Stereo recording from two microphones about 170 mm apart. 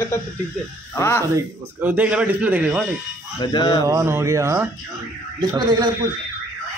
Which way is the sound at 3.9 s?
15° right (ahead or behind).